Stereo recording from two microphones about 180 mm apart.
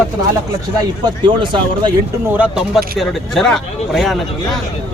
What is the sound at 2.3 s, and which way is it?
Speech, 5° right (ahead or behind).